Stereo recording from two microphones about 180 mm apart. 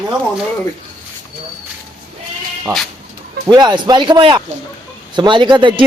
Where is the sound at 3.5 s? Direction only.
25° right (ahead or behind).